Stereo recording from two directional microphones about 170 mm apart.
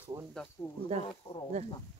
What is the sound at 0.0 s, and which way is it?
Speech, 15° right (ahead or behind).